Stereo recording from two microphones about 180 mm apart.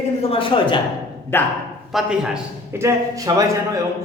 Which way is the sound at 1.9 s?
Centre (ahead or behind).